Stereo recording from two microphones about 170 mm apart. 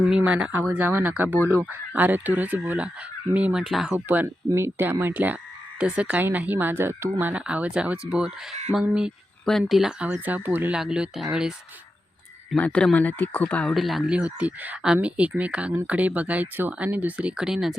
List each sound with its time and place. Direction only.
0.2 s speech: 5° right (ahead or behind)
12.5 s speech: 10° left (ahead or behind)